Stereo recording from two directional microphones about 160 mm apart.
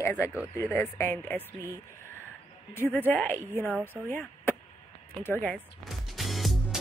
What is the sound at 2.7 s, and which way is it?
Speech, 15° left (ahead or behind).